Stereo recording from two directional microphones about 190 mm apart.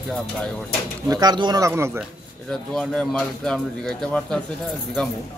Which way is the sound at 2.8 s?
5° left (ahead or behind).